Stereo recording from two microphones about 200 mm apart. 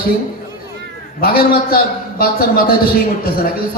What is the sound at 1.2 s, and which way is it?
A man's voice, 50° left (ahead or behind).